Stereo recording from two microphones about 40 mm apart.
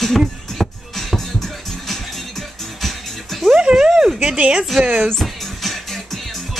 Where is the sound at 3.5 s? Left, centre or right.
Centre.